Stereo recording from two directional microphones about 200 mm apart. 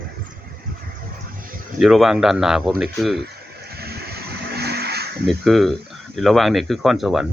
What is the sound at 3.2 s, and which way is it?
Vehicle, 50° right (ahead or behind).